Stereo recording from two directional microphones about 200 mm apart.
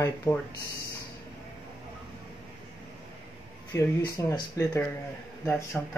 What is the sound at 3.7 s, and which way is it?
Speech, 15° left (ahead or behind).